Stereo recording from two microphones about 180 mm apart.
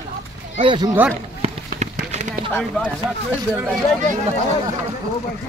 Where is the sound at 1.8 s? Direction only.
40° right (ahead or behind).